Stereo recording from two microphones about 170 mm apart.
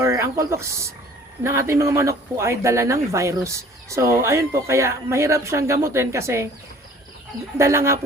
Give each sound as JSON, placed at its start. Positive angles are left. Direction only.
{"t": 0.0, "sound": "a man's voice", "side_deg": -15}
{"t": 7.6, "sound": "a man's voice", "side_deg": -15}